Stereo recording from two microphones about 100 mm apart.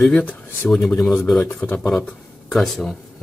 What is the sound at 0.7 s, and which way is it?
Speech, centre (ahead or behind).